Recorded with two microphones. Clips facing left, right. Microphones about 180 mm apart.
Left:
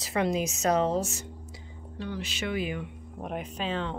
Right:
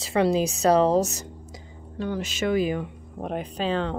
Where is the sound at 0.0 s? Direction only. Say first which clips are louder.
Right 6 dB; 30° right (ahead or behind).